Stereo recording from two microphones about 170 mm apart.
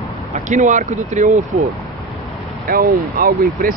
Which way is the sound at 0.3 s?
45° right (ahead or behind).